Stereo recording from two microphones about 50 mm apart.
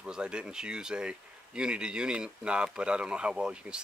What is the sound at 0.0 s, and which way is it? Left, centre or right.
Speech, centre.